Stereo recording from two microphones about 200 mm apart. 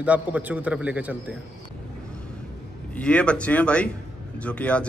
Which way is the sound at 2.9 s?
5° left (ahead or behind).